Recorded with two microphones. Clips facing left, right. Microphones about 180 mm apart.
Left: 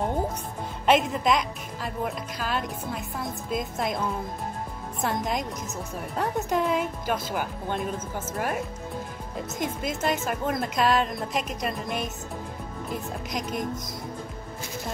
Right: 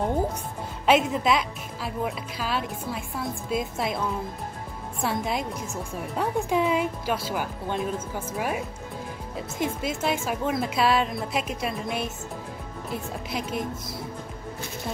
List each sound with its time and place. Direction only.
0.8 s speech: 5° right (ahead or behind)
5.0 s speech: 5° right (ahead or behind)
9.6 s a woman's voice: 5° right (ahead or behind)
13.4 s speech: 45° left (ahead or behind)